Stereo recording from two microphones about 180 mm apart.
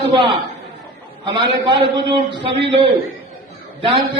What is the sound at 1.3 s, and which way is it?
Speech, 25° right (ahead or behind).